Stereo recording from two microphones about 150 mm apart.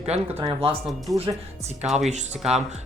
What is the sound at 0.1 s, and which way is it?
Speech, 45° right (ahead or behind).